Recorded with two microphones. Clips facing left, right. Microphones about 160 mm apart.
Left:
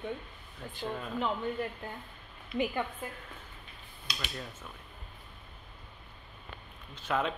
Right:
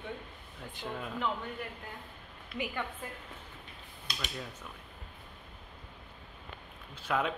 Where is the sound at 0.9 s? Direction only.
5° right (ahead or behind).